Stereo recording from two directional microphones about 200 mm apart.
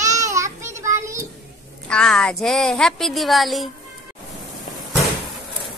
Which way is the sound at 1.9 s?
5° left (ahead or behind).